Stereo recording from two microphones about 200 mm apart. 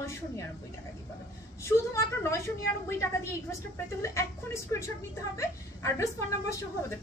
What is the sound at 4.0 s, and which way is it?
A woman's voice, 15° left (ahead or behind).